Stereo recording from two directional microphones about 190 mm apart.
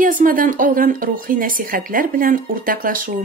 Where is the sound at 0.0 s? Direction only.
45° right (ahead or behind).